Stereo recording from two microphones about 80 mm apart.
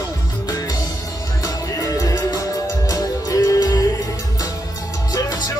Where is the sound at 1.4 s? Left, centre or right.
Left.